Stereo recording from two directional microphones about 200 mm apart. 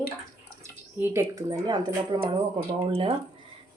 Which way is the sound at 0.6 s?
10° right (ahead or behind).